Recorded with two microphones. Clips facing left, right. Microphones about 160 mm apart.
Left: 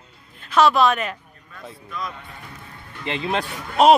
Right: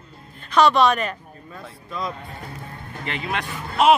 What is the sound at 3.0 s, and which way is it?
Speech, 25° left (ahead or behind).